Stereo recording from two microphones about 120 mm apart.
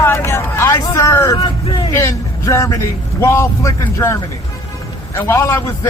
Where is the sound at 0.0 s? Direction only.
20° left (ahead or behind).